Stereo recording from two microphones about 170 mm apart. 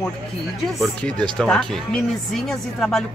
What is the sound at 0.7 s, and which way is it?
Speech, 5° left (ahead or behind).